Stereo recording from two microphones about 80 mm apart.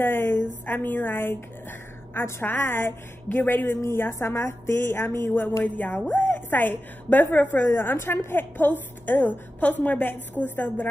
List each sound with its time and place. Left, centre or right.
0.0 s a woman's voice: left